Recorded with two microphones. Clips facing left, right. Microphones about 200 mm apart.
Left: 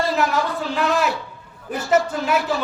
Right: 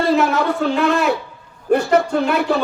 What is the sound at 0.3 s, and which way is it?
Speech, 60° right (ahead or behind).